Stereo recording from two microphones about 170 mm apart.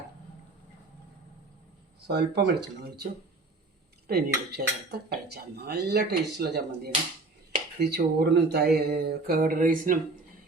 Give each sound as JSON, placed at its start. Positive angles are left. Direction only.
{"t": 2.0, "sound": "speech", "side_deg": -80}
{"t": 4.0, "sound": "cutlery", "side_deg": -65}